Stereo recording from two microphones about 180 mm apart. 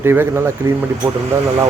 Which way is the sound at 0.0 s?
15° right (ahead or behind).